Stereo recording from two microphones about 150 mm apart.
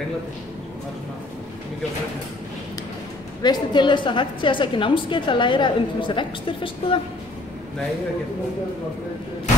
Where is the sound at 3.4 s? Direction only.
30° left (ahead or behind).